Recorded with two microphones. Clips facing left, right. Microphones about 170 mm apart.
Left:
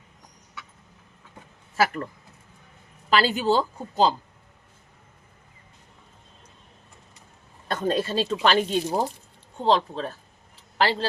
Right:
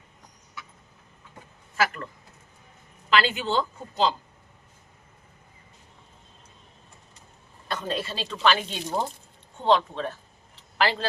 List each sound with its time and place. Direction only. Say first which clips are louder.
1.7 s speech: left 3 dB; 35° left (ahead or behind)
3.1 s speech: left 3 dB; 40° left (ahead or behind)
7.7 s speech: left 6 dB; 45° left (ahead or behind)